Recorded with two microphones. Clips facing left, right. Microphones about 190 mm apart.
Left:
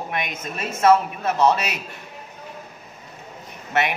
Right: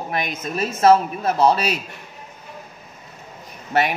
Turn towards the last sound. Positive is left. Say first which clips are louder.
# right 2 dB
turn(degrees=-35)  # may be behind; listen again after turning